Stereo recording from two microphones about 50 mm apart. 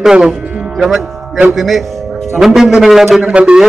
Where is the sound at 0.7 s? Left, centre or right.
Centre.